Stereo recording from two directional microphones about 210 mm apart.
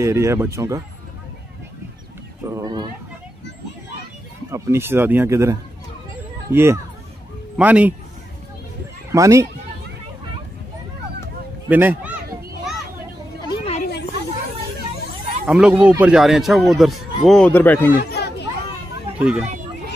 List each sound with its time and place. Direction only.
0.0 s speech: 15° right (ahead or behind)
2.5 s a sound: 20° right (ahead or behind)
4.5 s speech: 15° right (ahead or behind)
9.1 s speech: 15° right (ahead or behind)
11.7 s speech: 10° right (ahead or behind)
13.4 s chatter: 30° left (ahead or behind)
15.4 s speech: 5° right (ahead or behind)
17.9 s chatter: 50° left (ahead or behind)
19.1 s speech: 5° right (ahead or behind)